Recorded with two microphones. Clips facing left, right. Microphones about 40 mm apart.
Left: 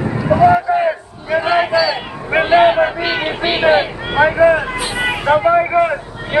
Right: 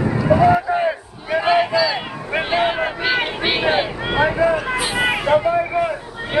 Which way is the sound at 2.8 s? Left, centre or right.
Centre.